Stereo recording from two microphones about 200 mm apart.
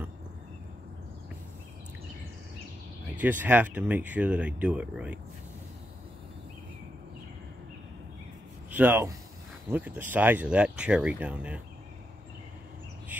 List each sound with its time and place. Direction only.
3.2 s speech: 10° right (ahead or behind)
8.7 s speech: 10° right (ahead or behind)
13.1 s bird: 10° right (ahead or behind)